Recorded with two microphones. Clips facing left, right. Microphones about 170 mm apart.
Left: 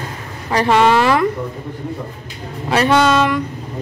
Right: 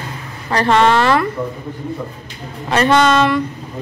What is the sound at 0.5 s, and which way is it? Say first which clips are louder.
Speech: even; 10° left (ahead or behind).